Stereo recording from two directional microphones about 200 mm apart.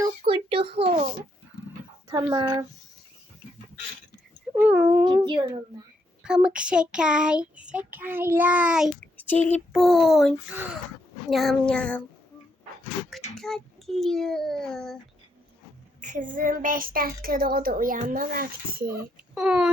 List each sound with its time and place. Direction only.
0.0 s a sound: 25° right (ahead or behind)
2.0 s speech: 20° right (ahead or behind)
4.5 s speech: 10° right (ahead or behind)
5.0 s speech: 25° right (ahead or behind)
6.2 s a child's voice: 5° right (ahead or behind)
9.1 s a child's voice: 10° left (ahead or behind)
13.3 s a child's voice: centre (ahead or behind)
16.0 s a woman's voice: 40° right (ahead or behind)
18.9 s a child's voice: 5° right (ahead or behind)